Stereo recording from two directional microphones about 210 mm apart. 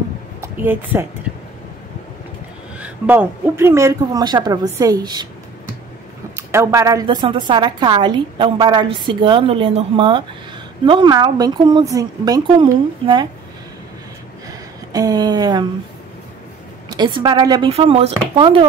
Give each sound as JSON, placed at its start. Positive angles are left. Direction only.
{"t": 0.4, "sound": "speech", "side_deg": -10}
{"t": 2.8, "sound": "speech", "side_deg": -10}
{"t": 6.3, "sound": "a woman's voice", "side_deg": -15}
{"t": 14.9, "sound": "a woman's voice", "side_deg": -20}
{"t": 16.9, "sound": "a woman's voice", "side_deg": -20}